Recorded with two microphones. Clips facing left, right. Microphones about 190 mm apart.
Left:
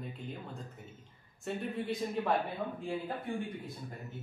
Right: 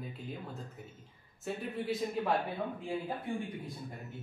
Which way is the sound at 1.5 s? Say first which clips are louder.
Left 1 dB; centre (ahead or behind).